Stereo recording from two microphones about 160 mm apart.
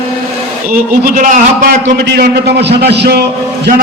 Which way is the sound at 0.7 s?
60° right (ahead or behind).